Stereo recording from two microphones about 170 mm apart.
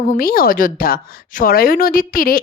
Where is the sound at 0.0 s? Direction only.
55° left (ahead or behind).